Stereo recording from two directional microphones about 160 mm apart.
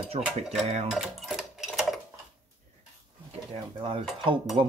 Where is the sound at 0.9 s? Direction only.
Centre (ahead or behind).